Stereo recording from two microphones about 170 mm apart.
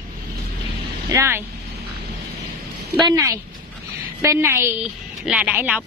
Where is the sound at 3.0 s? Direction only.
20° right (ahead or behind).